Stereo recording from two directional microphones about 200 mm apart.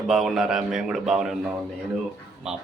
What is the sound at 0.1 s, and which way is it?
Speech, centre (ahead or behind).